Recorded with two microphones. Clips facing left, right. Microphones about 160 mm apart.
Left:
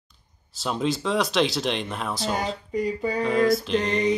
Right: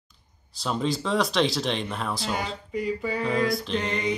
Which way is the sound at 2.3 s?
40° left (ahead or behind).